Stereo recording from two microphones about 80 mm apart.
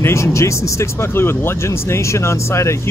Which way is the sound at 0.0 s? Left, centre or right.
Left.